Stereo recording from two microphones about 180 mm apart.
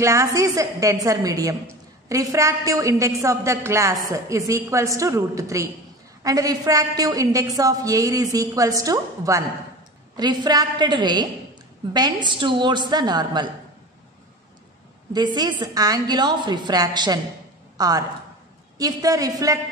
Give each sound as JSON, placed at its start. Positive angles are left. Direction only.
{"t": 0.0, "sound": "a woman's voice", "side_deg": -15}
{"t": 15.1, "sound": "a woman's voice", "side_deg": -25}